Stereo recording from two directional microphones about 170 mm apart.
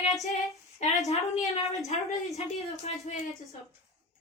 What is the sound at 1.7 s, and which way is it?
Speech, 40° left (ahead or behind).